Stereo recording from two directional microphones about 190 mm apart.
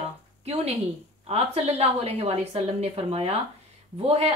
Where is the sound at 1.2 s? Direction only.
35° right (ahead or behind).